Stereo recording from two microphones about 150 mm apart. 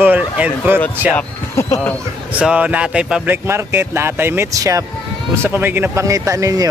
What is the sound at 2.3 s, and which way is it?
Speech, 10° right (ahead or behind).